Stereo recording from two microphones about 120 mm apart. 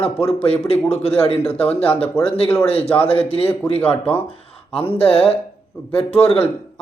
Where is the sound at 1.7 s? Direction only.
50° left (ahead or behind).